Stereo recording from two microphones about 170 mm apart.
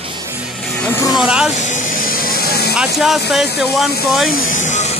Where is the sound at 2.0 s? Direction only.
60° left (ahead or behind).